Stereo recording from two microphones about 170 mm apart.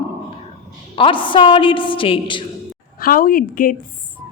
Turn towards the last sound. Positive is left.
turn(degrees=55)  # may be behind; listen again after turning